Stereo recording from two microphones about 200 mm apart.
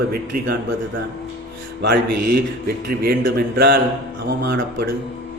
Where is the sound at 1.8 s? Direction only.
50° right (ahead or behind).